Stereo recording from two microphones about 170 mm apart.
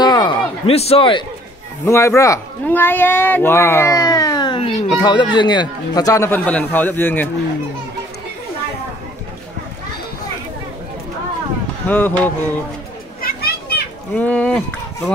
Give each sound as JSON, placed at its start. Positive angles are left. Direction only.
{"t": 0.0, "sound": "a sound", "side_deg": 25}
{"t": 1.9, "sound": "a man's voice", "side_deg": 15}
{"t": 11.9, "sound": "a man's voice", "side_deg": 10}
{"t": 13.2, "sound": "children playing", "side_deg": 65}
{"t": 14.1, "sound": "a man's voice", "side_deg": 10}